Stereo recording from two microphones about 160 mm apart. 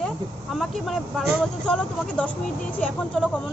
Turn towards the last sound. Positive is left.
turn(degrees=10)  # may be behind; listen again after turning